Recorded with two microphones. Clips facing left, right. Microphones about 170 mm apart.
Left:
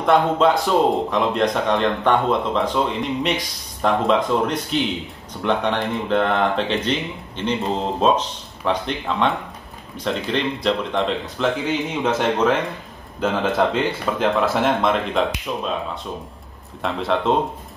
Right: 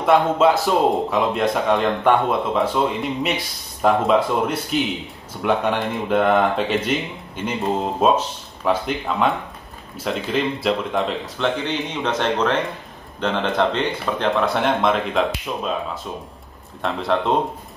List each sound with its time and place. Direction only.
0.0 s a man's voice: 5° right (ahead or behind)